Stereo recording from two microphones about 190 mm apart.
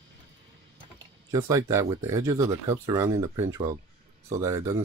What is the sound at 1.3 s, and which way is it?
Speech, 15° right (ahead or behind).